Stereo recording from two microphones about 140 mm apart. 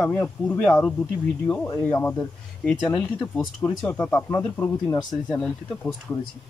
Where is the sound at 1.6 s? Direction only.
15° left (ahead or behind).